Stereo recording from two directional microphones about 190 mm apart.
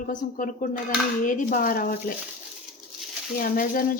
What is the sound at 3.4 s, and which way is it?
Speech, 45° left (ahead or behind).